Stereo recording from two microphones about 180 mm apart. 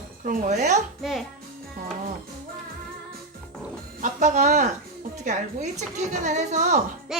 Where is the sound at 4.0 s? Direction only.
40° right (ahead or behind).